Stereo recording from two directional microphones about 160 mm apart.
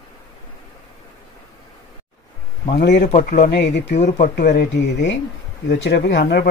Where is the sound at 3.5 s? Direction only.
90° left.